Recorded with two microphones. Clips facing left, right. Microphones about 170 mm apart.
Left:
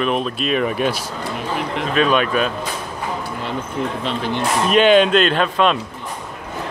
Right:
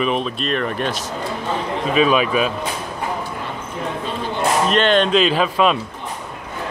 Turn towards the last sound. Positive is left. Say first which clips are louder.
# even
turn(degrees=-5)  # may be behind; listen again after turning